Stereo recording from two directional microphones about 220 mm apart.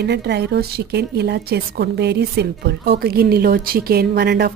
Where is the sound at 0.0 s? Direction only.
50° right (ahead or behind).